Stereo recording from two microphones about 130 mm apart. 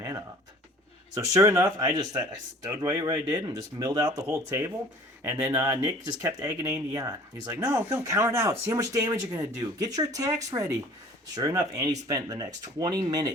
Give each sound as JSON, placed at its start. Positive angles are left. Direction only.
{"t": 1.1, "sound": "speech", "side_deg": -25}